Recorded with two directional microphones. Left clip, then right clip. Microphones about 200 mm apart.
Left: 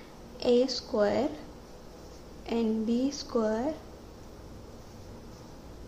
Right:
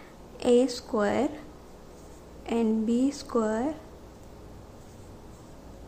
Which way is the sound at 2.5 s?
15° right (ahead or behind).